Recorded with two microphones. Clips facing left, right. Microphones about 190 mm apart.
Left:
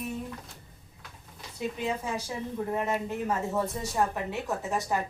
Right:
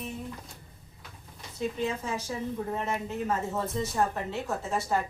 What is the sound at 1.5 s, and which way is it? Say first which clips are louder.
Speech: right 1 dB; 10° left (ahead or behind).